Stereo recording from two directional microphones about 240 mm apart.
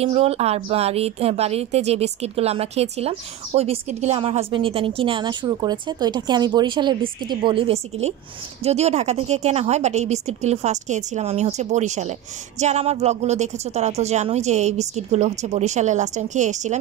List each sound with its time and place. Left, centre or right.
0.0 s a woman's voice: right